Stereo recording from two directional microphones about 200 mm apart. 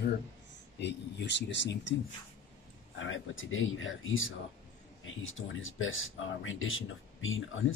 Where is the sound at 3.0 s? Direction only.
75° left (ahead or behind).